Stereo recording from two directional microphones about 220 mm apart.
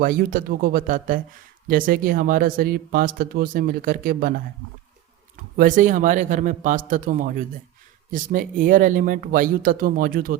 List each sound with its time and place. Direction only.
0.0 s speech: 40° right (ahead or behind)
5.4 s speech: 35° right (ahead or behind)